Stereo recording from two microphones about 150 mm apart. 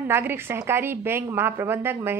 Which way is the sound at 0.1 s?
15° right (ahead or behind).